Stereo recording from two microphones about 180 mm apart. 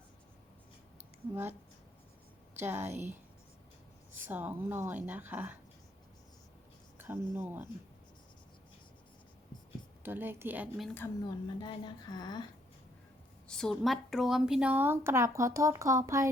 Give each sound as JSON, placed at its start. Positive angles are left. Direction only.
{"t": 1.3, "sound": "a woman's voice", "side_deg": -15}
{"t": 2.6, "sound": "a woman's voice", "side_deg": -15}
{"t": 4.2, "sound": "a woman's voice", "side_deg": -10}
{"t": 7.0, "sound": "a woman's voice", "side_deg": -10}
{"t": 10.0, "sound": "a woman's voice", "side_deg": -10}
{"t": 10.8, "sound": "a woman's voice", "side_deg": 10}
{"t": 11.4, "sound": "speech", "side_deg": 25}
{"t": 13.5, "sound": "a woman's voice", "side_deg": 5}